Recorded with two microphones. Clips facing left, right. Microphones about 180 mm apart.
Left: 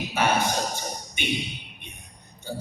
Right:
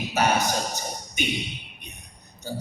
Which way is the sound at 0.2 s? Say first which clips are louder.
Right 1 dB; 40° right (ahead or behind).